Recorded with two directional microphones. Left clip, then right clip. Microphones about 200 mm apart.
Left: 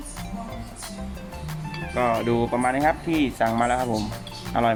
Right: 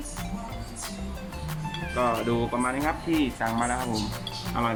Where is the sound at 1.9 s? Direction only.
55° left (ahead or behind).